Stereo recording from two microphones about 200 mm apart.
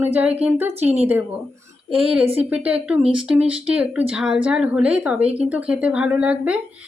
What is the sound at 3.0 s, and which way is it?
Speech, 25° right (ahead or behind).